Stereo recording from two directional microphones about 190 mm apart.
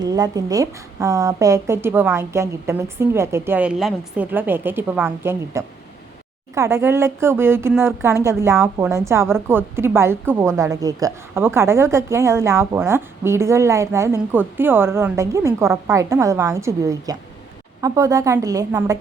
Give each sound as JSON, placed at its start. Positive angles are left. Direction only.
{"t": 0.0, "sound": "speech", "side_deg": -20}